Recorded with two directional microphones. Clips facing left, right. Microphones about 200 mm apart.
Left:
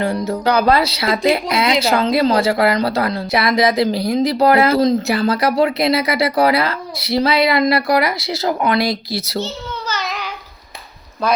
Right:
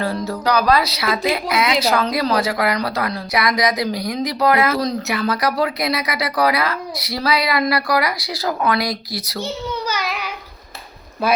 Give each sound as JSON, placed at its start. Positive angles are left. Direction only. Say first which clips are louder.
{"t": 0.0, "sound": "speech", "louder": "left 3 dB", "side_deg": 25}
{"t": 9.4, "sound": "babbling", "louder": "right 1 dB", "side_deg": -10}